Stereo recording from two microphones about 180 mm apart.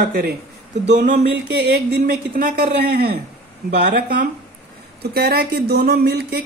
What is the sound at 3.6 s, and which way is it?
Speech, 70° right (ahead or behind).